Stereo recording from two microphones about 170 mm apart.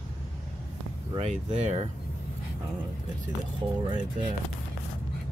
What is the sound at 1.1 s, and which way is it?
Speech, 40° right (ahead or behind).